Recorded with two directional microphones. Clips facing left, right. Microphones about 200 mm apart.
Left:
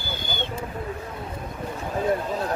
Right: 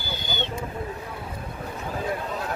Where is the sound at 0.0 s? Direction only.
50° left (ahead or behind).